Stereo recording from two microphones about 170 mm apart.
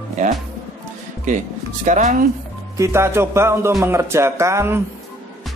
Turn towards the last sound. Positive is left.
turn(degrees=-15)  # may be behind; listen again after turning